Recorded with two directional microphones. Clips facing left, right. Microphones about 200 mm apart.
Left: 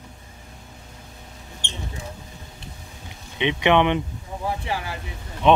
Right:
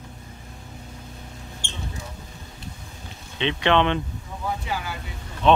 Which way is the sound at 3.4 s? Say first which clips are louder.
Left 2 dB; 15° left (ahead or behind).